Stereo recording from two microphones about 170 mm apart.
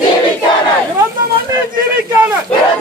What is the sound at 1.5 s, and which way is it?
Speech, 20° right (ahead or behind).